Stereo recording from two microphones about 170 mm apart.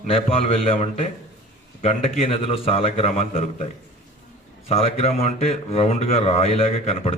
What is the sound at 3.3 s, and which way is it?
Speech, 50° left (ahead or behind).